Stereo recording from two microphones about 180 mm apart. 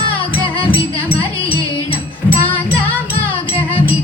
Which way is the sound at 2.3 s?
10° left (ahead or behind).